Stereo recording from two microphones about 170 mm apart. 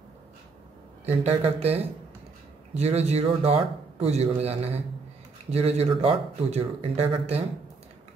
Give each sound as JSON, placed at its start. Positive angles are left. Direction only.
{"t": 1.0, "sound": "speech", "side_deg": -40}